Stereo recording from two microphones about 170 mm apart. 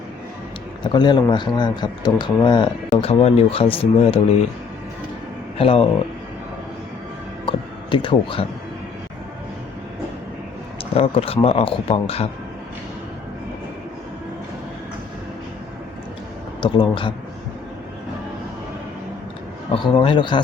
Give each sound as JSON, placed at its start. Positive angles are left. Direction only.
{"t": 0.9, "sound": "speech", "side_deg": 25}
{"t": 5.5, "sound": "speech", "side_deg": 35}
{"t": 7.4, "sound": "a sound", "side_deg": 30}
{"t": 10.9, "sound": "speech", "side_deg": 35}
{"t": 16.6, "sound": "speech", "side_deg": 25}
{"t": 19.7, "sound": "speech", "side_deg": 30}